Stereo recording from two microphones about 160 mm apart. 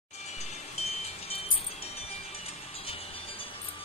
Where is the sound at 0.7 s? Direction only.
40° left (ahead or behind).